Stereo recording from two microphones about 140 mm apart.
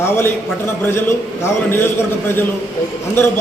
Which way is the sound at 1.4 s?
15° left (ahead or behind).